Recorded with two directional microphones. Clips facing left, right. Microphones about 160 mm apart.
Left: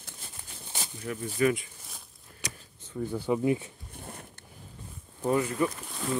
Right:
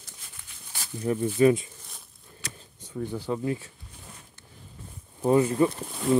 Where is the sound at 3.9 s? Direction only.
55° left (ahead or behind).